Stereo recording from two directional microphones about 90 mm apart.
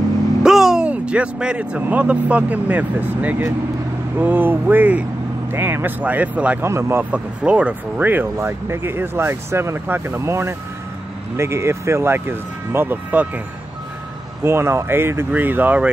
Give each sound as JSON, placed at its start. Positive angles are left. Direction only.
{"t": 0.4, "sound": "speech", "side_deg": -5}
{"t": 6.6, "sound": "speech", "side_deg": -30}
{"t": 7.1, "sound": "speech", "side_deg": -15}
{"t": 14.4, "sound": "speech", "side_deg": -30}